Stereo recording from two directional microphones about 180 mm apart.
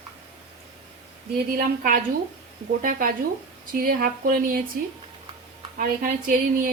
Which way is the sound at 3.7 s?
50° right (ahead or behind).